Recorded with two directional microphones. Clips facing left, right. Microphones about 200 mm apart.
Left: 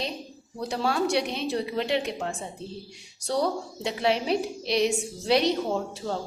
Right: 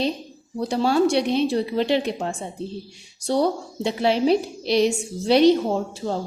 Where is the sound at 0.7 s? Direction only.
30° right (ahead or behind).